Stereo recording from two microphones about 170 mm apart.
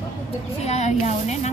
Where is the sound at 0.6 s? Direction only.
40° left (ahead or behind).